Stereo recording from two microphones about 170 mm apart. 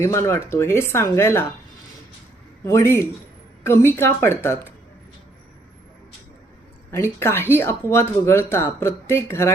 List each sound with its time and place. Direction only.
0.0 s speech: 15° left (ahead or behind)
2.6 s speech: 15° left (ahead or behind)
6.9 s speech: 15° left (ahead or behind)